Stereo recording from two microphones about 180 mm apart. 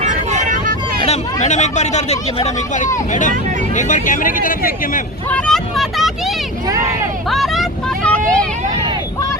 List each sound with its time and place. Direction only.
0.0 s vehicle: 40° right (ahead or behind)
1.0 s speech: 40° left (ahead or behind)
5.3 s vehicle: centre (ahead or behind)
6.7 s vehicle: 20° right (ahead or behind)
7.3 s vehicle: centre (ahead or behind)